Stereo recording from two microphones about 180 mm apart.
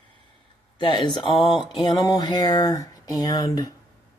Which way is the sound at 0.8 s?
25° left (ahead or behind).